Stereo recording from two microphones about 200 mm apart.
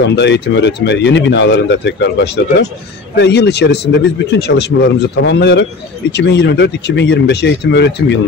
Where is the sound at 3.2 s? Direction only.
55° left (ahead or behind).